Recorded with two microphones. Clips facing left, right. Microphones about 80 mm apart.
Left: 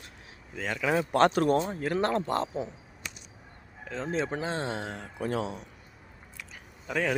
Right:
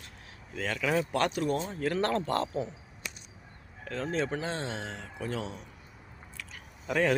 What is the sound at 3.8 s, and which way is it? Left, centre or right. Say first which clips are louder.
Speech: even; centre.